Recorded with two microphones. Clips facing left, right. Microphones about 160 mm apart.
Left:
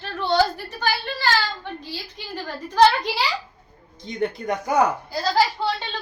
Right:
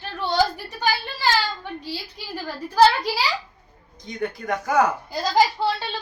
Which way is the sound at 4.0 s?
25° left (ahead or behind).